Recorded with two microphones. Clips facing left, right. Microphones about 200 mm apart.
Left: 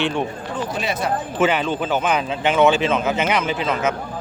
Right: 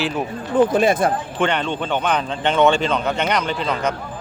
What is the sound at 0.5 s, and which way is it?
Speech, 50° right (ahead or behind).